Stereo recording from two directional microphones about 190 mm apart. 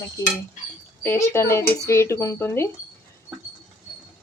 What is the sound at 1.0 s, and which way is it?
Speech, 10° left (ahead or behind).